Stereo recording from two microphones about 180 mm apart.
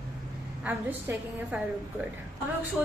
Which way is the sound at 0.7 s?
10° right (ahead or behind).